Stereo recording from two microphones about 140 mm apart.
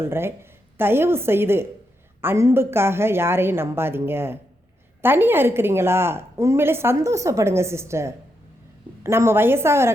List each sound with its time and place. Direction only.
0.0 s a woman's voice: 15° right (ahead or behind)